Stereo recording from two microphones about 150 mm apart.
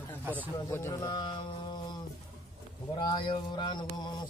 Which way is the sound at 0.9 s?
30° left (ahead or behind).